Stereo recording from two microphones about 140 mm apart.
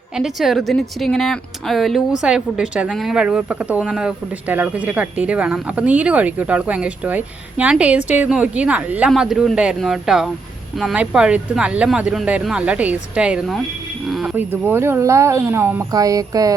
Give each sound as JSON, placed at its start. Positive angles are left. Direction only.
{"t": 0.1, "sound": "a woman's voice", "side_deg": -5}
{"t": 14.1, "sound": "a sound", "side_deg": 0}
{"t": 14.3, "sound": "speech", "side_deg": -15}